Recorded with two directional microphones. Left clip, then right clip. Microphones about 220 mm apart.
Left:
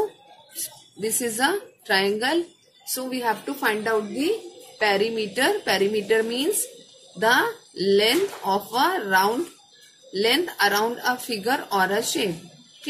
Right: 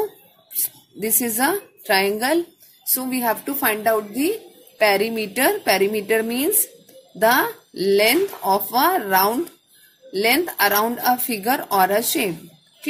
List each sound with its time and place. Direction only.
1.0 s a woman's voice: 35° right (ahead or behind)